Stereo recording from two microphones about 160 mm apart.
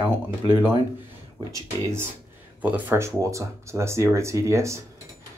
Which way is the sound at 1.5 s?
15° right (ahead or behind).